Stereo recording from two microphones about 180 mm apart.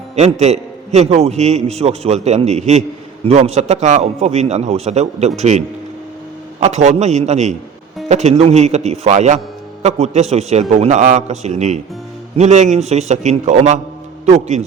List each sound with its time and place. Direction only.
0.2 s a man's voice: 40° right (ahead or behind)